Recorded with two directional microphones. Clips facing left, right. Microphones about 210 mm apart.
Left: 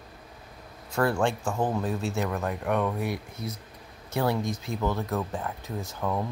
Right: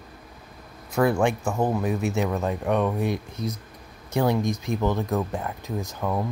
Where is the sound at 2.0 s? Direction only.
20° right (ahead or behind).